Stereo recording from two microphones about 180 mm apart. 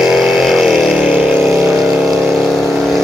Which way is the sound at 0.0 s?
Centre (ahead or behind).